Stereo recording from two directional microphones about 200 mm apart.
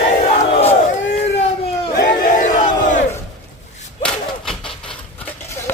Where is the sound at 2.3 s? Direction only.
40° left (ahead or behind).